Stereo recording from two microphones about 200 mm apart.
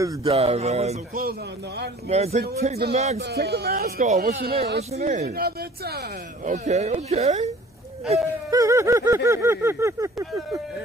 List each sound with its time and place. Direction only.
0.2 s speech: 30° right (ahead or behind)
2.0 s speech: 30° right (ahead or behind)
3.2 s speech: 55° right (ahead or behind)
3.8 s speech: 35° right (ahead or behind)
4.4 s speech: 50° right (ahead or behind)
4.9 s speech: 35° right (ahead or behind)
5.2 s speech: 50° right (ahead or behind)
6.5 s speech: 35° right (ahead or behind)
8.5 s a sound: 15° right (ahead or behind)